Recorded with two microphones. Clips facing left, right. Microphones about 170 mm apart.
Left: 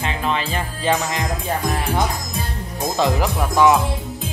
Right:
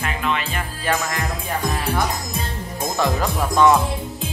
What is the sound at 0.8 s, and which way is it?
Speech, 15° left (ahead or behind).